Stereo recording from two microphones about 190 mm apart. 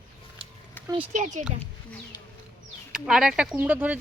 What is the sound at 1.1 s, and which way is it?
Speech, 40° right (ahead or behind).